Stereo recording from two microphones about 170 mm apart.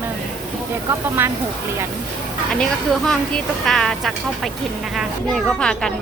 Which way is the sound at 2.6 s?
5° left (ahead or behind).